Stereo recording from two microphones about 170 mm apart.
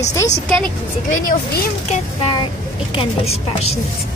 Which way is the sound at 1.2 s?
60° left (ahead or behind).